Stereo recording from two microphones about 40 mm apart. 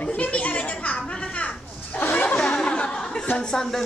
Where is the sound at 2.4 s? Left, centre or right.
Centre.